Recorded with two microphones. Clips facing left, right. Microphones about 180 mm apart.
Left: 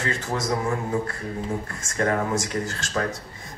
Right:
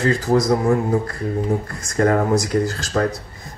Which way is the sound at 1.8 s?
40° right (ahead or behind).